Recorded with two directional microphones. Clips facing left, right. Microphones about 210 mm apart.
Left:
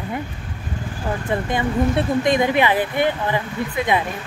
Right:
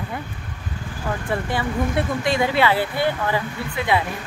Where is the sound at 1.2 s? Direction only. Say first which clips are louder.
Left 3 dB; 20° left (ahead or behind).